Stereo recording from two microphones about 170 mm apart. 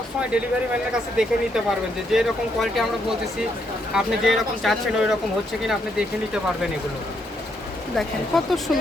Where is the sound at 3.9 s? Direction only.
Centre (ahead or behind).